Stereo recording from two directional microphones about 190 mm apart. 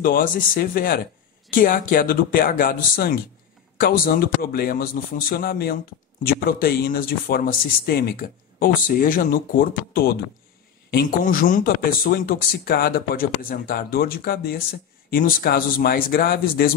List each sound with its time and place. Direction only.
0.0 s speech: 50° left (ahead or behind)